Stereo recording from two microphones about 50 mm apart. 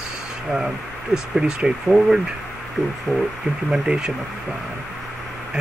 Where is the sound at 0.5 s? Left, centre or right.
Centre.